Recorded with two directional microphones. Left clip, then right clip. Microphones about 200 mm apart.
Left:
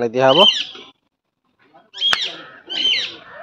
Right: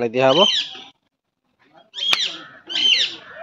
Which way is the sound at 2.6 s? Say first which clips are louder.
Right 2 dB; 40° right (ahead or behind).